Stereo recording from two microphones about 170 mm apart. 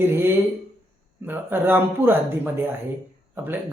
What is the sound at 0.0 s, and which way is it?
Speech, 10° right (ahead or behind).